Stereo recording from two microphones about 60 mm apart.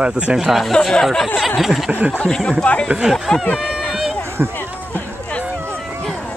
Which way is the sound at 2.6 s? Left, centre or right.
Left.